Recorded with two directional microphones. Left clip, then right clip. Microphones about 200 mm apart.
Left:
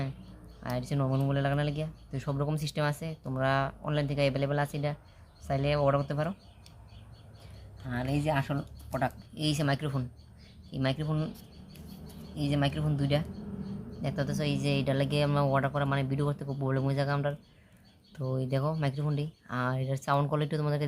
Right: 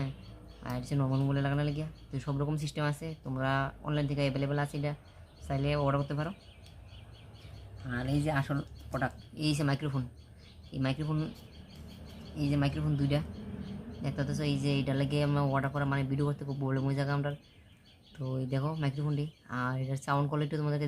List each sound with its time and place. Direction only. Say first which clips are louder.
0.6 s speech: left 3 dB; 15° left (ahead or behind)
7.9 s speech: left 2 dB; 10° left (ahead or behind)
12.4 s speech: left 2 dB; 15° left (ahead or behind)